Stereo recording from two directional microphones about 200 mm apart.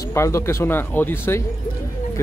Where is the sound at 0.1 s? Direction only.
15° left (ahead or behind).